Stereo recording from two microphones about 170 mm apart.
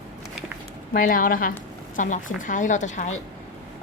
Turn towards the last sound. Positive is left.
turn(degrees=45)  # may be behind; listen again after turning